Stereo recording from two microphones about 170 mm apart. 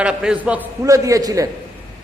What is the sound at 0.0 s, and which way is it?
Speech, 5° right (ahead or behind).